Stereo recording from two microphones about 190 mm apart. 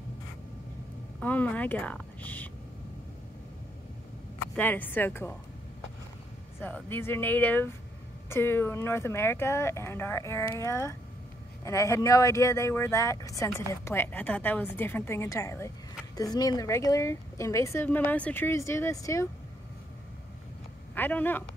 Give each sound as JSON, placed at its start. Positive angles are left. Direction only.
{"t": 1.2, "sound": "speech", "side_deg": 10}
{"t": 4.6, "sound": "speech", "side_deg": 10}
{"t": 6.6, "sound": "speech", "side_deg": 10}
{"t": 20.9, "sound": "speech", "side_deg": 10}